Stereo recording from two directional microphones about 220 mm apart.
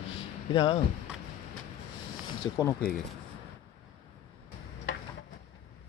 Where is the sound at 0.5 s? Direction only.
20° left (ahead or behind).